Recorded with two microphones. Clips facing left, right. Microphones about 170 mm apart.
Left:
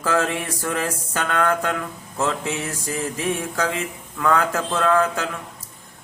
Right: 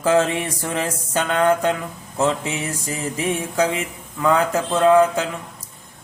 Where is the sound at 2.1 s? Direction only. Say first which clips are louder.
Right 3 dB; 20° right (ahead or behind).